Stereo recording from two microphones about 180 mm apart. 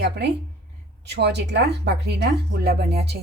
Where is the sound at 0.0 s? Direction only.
70° right (ahead or behind).